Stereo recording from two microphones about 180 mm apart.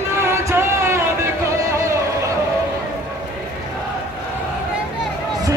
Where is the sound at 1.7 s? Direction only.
15° right (ahead or behind).